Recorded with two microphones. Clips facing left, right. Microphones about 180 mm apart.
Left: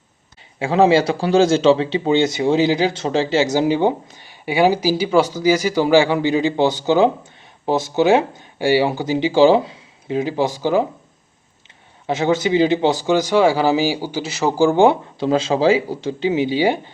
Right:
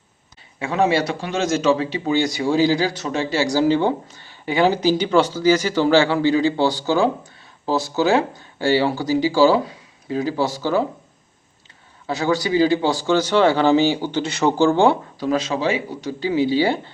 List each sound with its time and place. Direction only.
0.6 s speech: 30° left (ahead or behind)
12.0 s speech: 20° left (ahead or behind)